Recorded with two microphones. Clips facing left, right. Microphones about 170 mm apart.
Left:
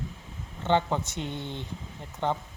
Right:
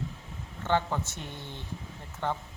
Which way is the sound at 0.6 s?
20° left (ahead or behind).